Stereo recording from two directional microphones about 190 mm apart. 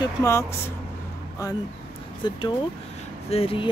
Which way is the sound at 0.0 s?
15° left (ahead or behind).